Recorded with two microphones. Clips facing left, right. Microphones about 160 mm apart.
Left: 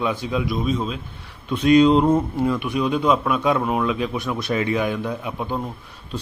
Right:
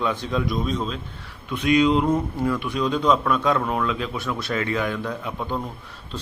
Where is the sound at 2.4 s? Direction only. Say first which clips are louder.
Left 2 dB; 15° left (ahead or behind).